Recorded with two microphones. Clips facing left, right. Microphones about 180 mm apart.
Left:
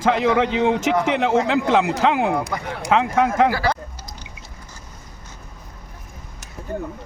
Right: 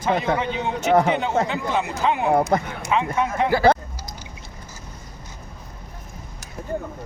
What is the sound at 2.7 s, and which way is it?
Speech, 80° left.